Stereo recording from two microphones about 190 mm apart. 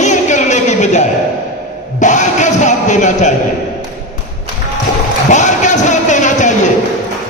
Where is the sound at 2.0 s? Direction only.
40° left (ahead or behind).